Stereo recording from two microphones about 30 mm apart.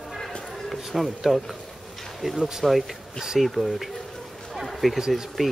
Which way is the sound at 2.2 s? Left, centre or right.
Centre.